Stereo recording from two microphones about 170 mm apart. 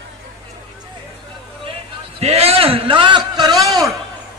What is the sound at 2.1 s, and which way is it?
A man's voice, 35° right (ahead or behind).